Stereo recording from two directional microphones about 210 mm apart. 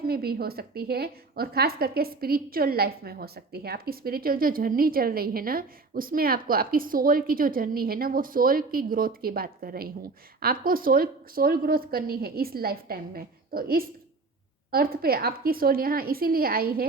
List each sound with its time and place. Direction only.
0.0 s a woman's voice: 45° right (ahead or behind)